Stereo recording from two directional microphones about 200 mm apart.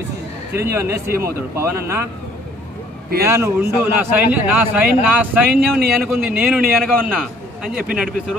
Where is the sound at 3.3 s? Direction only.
10° right (ahead or behind).